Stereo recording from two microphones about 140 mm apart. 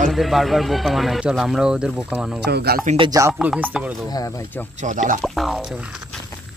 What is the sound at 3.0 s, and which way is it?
Speech, 25° right (ahead or behind).